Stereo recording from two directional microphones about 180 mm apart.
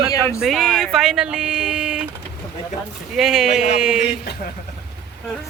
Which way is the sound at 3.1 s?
Centre (ahead or behind).